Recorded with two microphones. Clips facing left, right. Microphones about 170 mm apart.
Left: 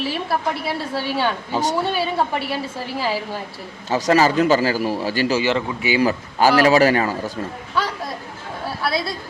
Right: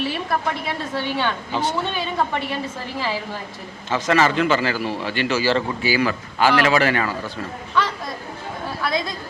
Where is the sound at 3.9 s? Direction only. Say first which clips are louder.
Left 2 dB; 40° left (ahead or behind).